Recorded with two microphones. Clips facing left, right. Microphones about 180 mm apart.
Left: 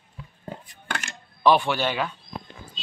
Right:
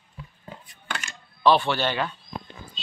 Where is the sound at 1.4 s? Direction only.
10° left (ahead or behind).